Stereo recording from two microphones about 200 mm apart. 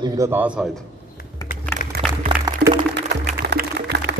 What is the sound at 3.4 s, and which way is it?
Music, 55° right (ahead or behind).